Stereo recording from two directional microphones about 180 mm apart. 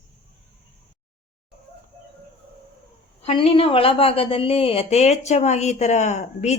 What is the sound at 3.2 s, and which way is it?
Speech, 30° left (ahead or behind).